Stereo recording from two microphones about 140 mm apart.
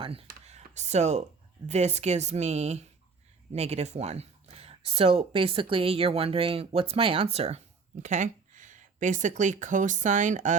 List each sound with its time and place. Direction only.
0.0 s speech: 40° right (ahead or behind)
0.4 s speech: 55° right (ahead or behind)
8.0 s speech: 60° right (ahead or behind)